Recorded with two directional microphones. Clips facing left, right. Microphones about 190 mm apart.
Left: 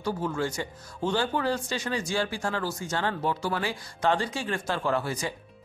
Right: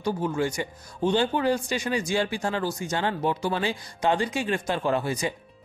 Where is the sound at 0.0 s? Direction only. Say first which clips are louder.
Right 3 dB; 15° right (ahead or behind).